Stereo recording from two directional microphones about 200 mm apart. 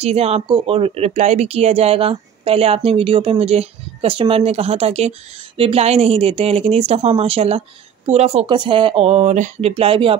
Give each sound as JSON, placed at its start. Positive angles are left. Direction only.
{"t": 0.0, "sound": "speech", "side_deg": -30}